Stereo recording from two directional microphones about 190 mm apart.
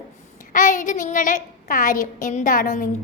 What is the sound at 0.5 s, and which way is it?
A woman's voice, 45° left (ahead or behind).